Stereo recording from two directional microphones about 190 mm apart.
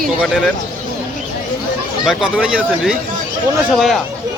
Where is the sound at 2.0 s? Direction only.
5° right (ahead or behind).